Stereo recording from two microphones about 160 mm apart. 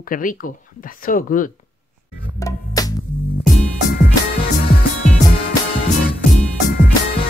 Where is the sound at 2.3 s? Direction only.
20° left (ahead or behind).